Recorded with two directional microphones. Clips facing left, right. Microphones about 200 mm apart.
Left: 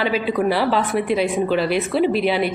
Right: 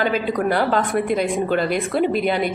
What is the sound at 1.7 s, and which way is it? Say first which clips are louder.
Speech: left 1 dB; 45° right (ahead or behind).